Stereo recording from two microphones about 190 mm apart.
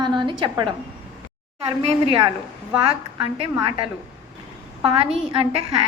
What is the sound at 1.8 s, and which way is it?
A woman's voice, 30° right (ahead or behind).